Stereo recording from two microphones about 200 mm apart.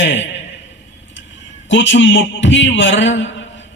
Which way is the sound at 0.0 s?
65° left (ahead or behind).